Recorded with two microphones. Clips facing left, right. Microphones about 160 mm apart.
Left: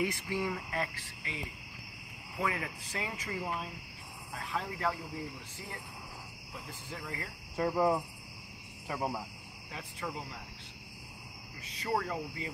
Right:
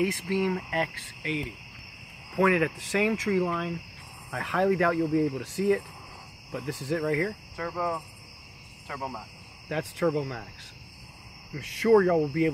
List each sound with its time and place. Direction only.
0.2 s speech: 70° right (ahead or behind); by 1.5 s 90° right
2.3 s speech: 80° right
4.3 s speech: 75° right (ahead or behind)
7.5 s cricket: 20° left (ahead or behind)
8.8 s speech: 10° left (ahead or behind)
9.7 s speech: 75° right (ahead or behind)
11.5 s speech: 70° right (ahead or behind)